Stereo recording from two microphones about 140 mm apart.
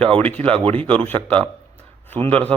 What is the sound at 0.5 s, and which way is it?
Speech, 40° right (ahead or behind).